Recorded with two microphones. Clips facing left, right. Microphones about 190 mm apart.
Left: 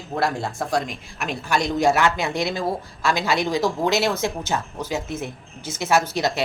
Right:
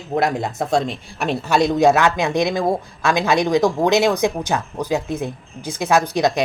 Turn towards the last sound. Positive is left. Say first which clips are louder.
# right 4 dB
turn(degrees=-15)  # may be behind; listen again after turning